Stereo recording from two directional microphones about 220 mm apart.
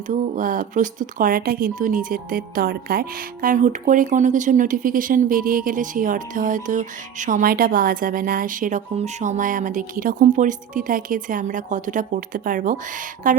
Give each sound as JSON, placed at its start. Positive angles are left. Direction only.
{"t": 0.3, "sound": "speech", "side_deg": -40}